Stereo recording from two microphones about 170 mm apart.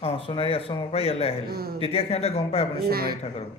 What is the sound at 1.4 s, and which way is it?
Speech, 65° right (ahead or behind).